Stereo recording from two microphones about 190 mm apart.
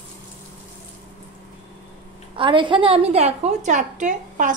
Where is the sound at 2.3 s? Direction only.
25° right (ahead or behind).